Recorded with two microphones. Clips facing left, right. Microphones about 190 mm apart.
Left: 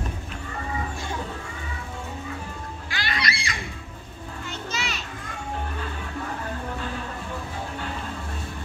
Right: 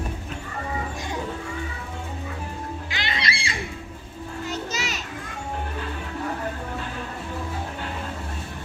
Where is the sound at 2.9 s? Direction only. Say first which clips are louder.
Left 2 dB; 20° right (ahead or behind).